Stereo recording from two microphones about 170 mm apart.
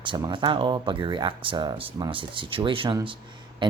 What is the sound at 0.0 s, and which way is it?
Speech, 25° right (ahead or behind).